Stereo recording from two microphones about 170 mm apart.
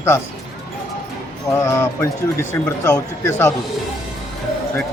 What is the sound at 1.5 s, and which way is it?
Speech, 15° left (ahead or behind).